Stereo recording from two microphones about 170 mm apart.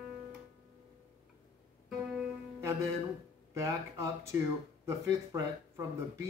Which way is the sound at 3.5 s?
15° right (ahead or behind).